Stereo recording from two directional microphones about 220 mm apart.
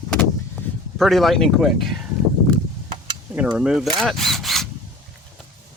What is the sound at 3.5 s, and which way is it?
Speech, 5° right (ahead or behind).